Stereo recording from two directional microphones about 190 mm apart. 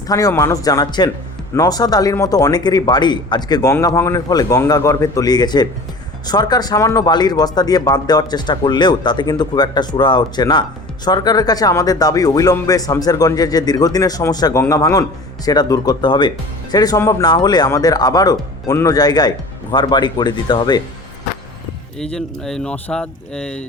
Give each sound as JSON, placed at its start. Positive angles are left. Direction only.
{"t": 0.1, "sound": "speech", "side_deg": 15}
{"t": 22.1, "sound": "speech", "side_deg": 5}